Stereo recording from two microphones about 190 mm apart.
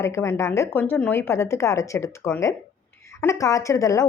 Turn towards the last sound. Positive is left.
turn(degrees=15)  # may be behind; listen again after turning